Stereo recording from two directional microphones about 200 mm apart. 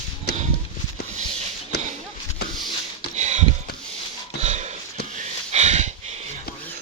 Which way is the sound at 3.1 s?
35° right (ahead or behind).